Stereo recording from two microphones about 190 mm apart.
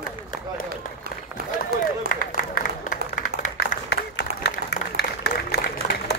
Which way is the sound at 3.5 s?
65° left (ahead or behind).